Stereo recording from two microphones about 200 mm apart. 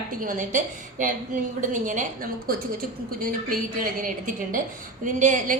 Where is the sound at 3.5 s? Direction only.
45° right (ahead or behind).